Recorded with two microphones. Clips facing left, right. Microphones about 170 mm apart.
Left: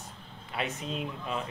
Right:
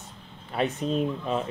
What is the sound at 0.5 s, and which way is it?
Speech, 40° right (ahead or behind).